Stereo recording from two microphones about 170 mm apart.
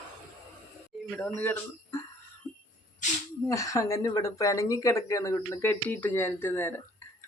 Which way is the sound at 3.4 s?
20° left (ahead or behind).